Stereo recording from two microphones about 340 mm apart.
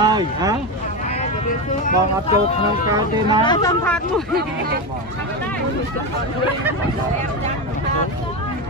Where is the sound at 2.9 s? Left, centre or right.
Centre.